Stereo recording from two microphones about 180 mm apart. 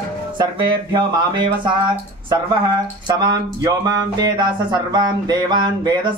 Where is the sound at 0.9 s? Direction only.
25° right (ahead or behind).